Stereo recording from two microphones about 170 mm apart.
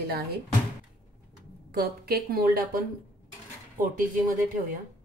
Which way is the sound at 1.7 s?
65° right (ahead or behind).